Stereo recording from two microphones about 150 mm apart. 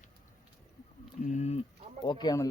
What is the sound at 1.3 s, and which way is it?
Speech, 45° left (ahead or behind).